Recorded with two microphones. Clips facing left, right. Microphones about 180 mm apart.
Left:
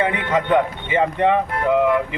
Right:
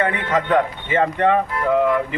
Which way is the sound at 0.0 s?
15° left (ahead or behind).